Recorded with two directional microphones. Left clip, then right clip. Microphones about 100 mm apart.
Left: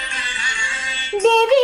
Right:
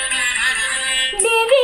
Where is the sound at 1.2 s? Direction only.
25° left (ahead or behind).